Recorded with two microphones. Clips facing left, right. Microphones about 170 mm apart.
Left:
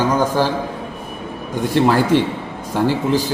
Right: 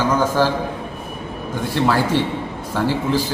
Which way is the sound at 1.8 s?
15° left (ahead or behind).